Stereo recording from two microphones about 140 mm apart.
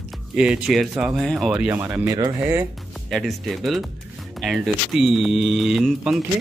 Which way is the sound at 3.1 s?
Centre (ahead or behind).